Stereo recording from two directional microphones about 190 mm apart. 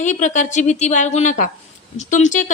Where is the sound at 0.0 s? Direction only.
40° left (ahead or behind).